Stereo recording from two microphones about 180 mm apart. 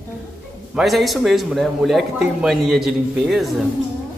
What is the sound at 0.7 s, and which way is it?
A man's voice, centre (ahead or behind).